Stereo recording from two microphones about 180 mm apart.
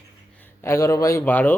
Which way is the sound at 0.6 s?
15° left (ahead or behind).